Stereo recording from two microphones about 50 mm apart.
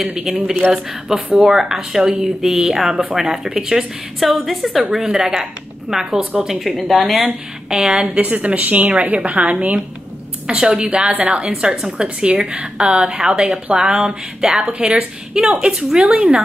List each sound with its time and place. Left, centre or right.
0.2 s a woman's voice: centre
7.7 s speech: centre
8.2 s a woman's voice: right
11.5 s speech: centre